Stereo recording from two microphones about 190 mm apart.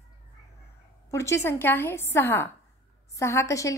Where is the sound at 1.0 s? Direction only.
15° left (ahead or behind).